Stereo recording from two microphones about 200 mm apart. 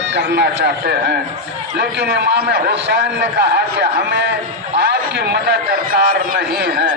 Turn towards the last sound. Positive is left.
turn(degrees=-50)  # may be behind; listen again after turning